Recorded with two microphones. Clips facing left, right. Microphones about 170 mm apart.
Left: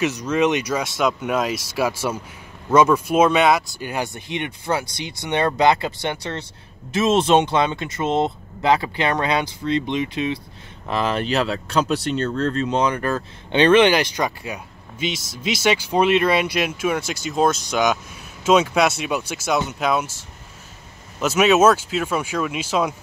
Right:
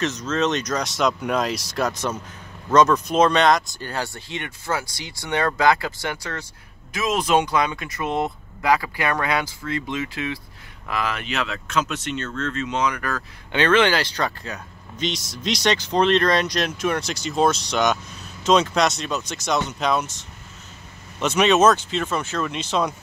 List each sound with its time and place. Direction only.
0.0 s speech: 10° left (ahead or behind)